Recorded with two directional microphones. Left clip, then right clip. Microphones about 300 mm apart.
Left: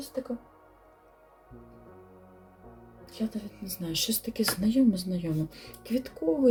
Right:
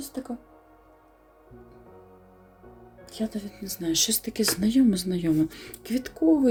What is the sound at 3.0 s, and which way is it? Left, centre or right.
Speech, right.